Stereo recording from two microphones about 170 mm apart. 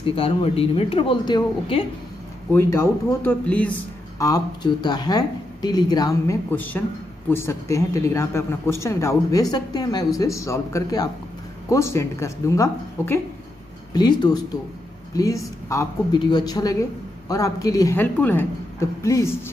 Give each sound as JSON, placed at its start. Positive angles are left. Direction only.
{"t": 0.0, "sound": "speech", "side_deg": 35}
{"t": 2.5, "sound": "speech", "side_deg": 15}
{"t": 4.2, "sound": "a woman's voice", "side_deg": 20}